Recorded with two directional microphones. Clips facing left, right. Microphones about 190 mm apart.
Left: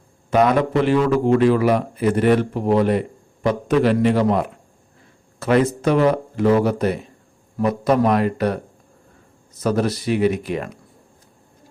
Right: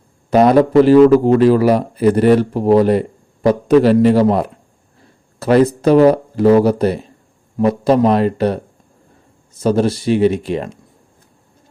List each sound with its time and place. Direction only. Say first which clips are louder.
0.3 s speech: right 6 dB; 35° right (ahead or behind)